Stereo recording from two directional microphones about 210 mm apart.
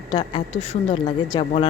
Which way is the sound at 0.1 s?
20° left (ahead or behind).